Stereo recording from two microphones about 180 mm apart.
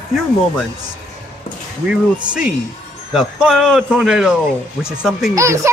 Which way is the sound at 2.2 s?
5° right (ahead or behind).